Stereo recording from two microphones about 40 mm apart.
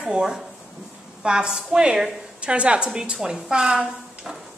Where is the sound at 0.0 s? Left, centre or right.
Centre.